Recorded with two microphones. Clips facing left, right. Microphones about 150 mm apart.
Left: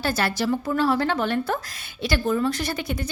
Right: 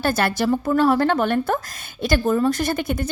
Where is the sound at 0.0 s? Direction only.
50° right (ahead or behind).